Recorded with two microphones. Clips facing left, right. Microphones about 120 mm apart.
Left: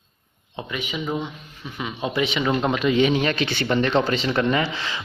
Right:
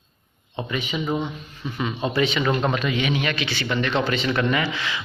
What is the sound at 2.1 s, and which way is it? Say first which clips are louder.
Speech: even; 20° left (ahead or behind).